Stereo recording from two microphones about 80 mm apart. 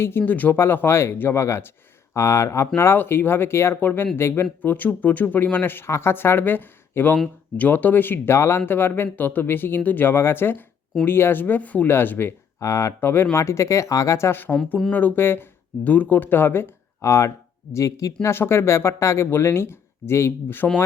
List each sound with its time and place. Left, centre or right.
0.0 s speech: left
12.5 s speech: left
18.3 s speech: left